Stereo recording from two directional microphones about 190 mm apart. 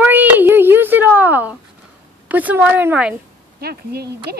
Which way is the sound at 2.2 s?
10° right (ahead or behind).